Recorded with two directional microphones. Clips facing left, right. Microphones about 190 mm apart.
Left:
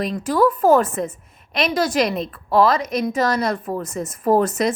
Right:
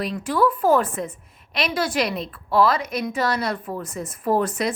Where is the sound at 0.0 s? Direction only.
40° left (ahead or behind).